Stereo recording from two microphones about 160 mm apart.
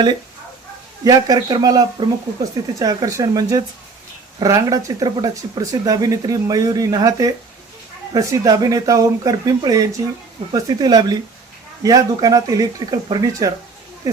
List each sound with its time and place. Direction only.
1.0 s speech: 25° right (ahead or behind)